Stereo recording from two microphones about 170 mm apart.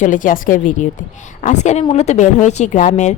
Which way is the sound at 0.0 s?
50° left (ahead or behind).